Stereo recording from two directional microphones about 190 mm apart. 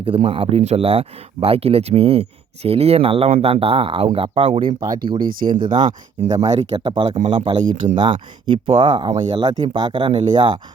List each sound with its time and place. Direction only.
0.3 s speech: 30° right (ahead or behind)
5.4 s speech: 30° right (ahead or behind)